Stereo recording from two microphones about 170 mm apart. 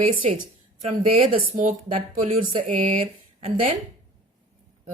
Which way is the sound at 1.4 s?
55° right (ahead or behind).